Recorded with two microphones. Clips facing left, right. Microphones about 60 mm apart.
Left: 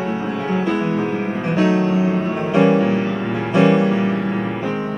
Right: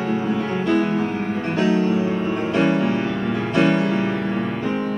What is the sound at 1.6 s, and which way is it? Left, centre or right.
Music, left.